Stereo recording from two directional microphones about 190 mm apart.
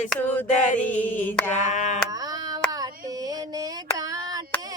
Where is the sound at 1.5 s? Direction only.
40° left (ahead or behind).